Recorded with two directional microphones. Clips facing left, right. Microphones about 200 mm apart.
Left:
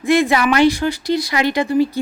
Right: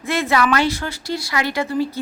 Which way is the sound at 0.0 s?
15° left (ahead or behind).